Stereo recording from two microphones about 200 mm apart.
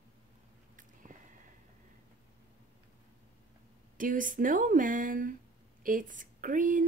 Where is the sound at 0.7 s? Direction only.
40° right (ahead or behind).